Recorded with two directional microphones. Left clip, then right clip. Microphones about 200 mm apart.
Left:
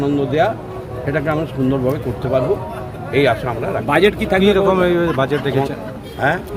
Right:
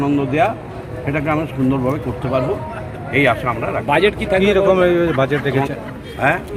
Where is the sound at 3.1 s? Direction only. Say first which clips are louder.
Even; 15° left (ahead or behind).